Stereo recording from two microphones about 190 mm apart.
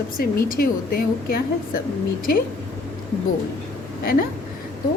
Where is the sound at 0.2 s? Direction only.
50° left (ahead or behind).